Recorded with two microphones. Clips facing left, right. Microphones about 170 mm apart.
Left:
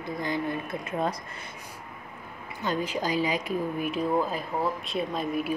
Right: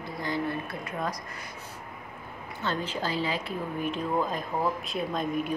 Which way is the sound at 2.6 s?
15° left (ahead or behind).